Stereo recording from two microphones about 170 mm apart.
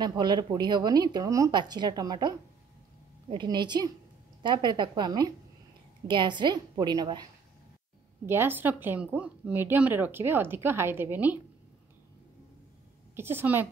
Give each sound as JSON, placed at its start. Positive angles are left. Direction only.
{"t": 0.2, "sound": "speech", "side_deg": -25}
{"t": 8.3, "sound": "speech", "side_deg": -10}
{"t": 13.1, "sound": "speech", "side_deg": -15}